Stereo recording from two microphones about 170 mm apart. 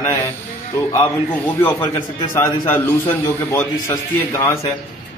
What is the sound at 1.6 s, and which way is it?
A man's voice, 10° left (ahead or behind).